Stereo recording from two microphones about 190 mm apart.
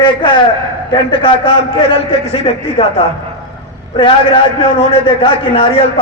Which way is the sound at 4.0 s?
25° left (ahead or behind).